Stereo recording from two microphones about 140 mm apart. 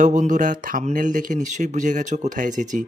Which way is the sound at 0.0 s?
65° right (ahead or behind).